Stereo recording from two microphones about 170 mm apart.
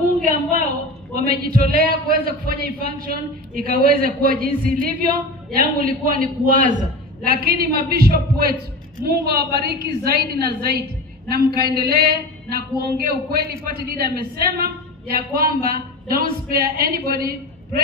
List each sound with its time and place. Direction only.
1.1 s a man's voice: 60° right (ahead or behind)
7.2 s a man's voice: 65° right (ahead or behind)